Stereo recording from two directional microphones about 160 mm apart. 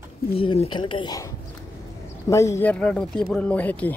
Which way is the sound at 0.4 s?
35° left (ahead or behind).